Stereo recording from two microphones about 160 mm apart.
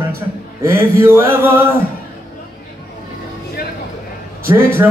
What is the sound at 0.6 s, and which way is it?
Mantra, 15° right (ahead or behind).